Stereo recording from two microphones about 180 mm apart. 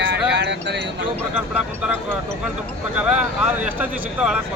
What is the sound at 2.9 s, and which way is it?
A man's voice, 5° right (ahead or behind).